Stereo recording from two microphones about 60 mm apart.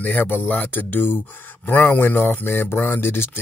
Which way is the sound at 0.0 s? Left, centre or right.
Left.